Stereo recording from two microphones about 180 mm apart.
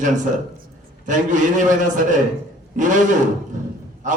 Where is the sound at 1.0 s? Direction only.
45° right (ahead or behind).